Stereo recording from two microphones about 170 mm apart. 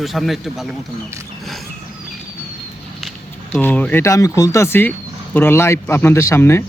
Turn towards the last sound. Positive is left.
turn(degrees=15)  # may be behind; listen again after turning